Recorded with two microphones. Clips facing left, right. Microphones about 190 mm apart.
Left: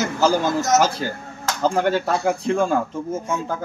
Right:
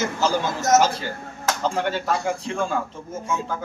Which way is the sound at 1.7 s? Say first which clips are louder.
Left 6 dB; 55° left (ahead or behind).